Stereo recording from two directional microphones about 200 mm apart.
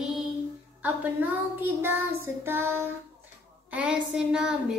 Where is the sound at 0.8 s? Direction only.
10° right (ahead or behind).